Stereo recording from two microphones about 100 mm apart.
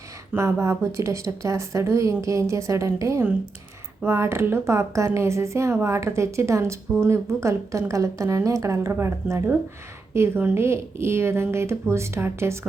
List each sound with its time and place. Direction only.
0.3 s a woman's voice: 25° right (ahead or behind)